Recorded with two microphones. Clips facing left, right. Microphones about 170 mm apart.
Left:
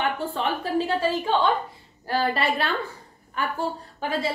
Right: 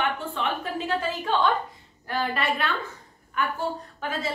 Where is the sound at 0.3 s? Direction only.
35° left (ahead or behind).